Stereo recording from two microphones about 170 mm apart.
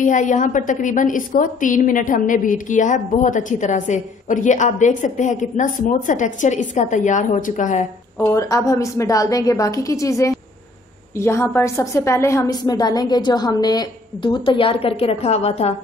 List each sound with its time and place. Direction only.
0.0 s a woman's voice: 45° left (ahead or behind)
8.2 s a woman's voice: 20° left (ahead or behind); by 15.7 s 40° left (ahead or behind)